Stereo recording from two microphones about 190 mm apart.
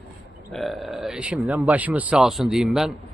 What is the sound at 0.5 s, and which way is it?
Speech, centre (ahead or behind).